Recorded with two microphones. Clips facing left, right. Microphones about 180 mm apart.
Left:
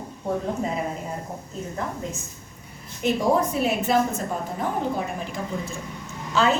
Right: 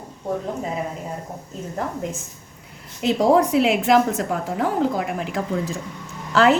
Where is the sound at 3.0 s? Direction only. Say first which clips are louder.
Right 5 dB; 90° right.